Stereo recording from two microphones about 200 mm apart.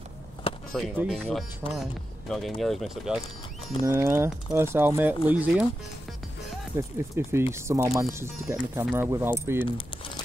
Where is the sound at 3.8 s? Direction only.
15° right (ahead or behind).